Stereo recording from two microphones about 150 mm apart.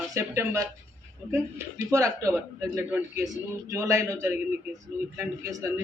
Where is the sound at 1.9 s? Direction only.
20° right (ahead or behind).